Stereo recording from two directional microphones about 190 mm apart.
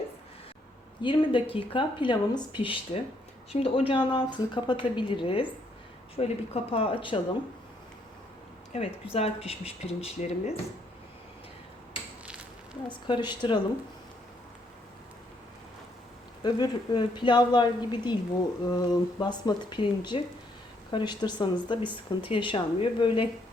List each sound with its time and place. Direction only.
1.0 s speech: 25° left (ahead or behind)
8.7 s speech: 35° left (ahead or behind)
12.9 s speech: 25° left (ahead or behind)
16.4 s speech: 25° left (ahead or behind)